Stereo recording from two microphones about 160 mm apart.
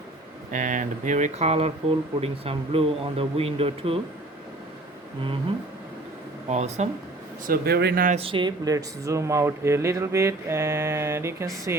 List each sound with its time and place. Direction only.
0.5 s speech: 55° right (ahead or behind); by 4.0 s 35° right (ahead or behind)
6.5 s speech: 45° right (ahead or behind)
7.4 s speech: 70° right (ahead or behind); by 8.0 s 85° right
8.2 s speech: 30° right (ahead or behind); by 11.4 s 15° right (ahead or behind)